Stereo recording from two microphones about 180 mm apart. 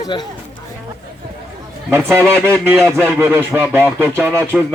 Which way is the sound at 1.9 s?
15° right (ahead or behind).